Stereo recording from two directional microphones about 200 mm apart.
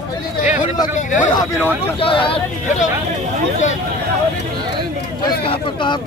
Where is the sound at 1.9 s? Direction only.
25° left (ahead or behind).